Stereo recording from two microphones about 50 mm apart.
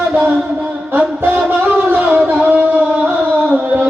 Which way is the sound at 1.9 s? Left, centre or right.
Right.